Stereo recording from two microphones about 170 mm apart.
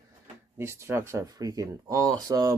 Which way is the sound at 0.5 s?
15° right (ahead or behind).